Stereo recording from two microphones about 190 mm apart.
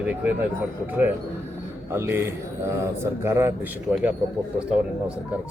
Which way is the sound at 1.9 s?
10° right (ahead or behind).